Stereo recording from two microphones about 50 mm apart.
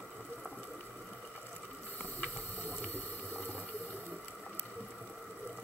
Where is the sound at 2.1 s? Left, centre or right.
Left.